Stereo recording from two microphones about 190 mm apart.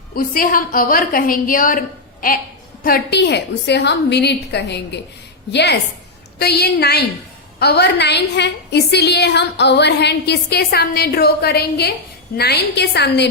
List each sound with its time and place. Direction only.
0.1 s a woman's voice: 50° left (ahead or behind)
2.8 s a woman's voice: 55° left (ahead or behind)